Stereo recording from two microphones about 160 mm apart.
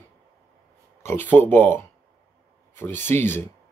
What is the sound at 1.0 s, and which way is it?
Speech, 15° left (ahead or behind).